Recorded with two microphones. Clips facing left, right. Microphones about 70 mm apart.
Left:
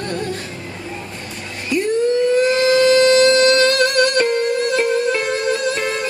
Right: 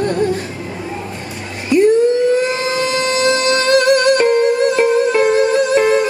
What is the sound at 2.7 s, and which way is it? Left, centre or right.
Music, centre.